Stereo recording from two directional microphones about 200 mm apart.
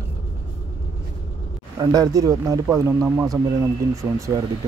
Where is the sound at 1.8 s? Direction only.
20° right (ahead or behind).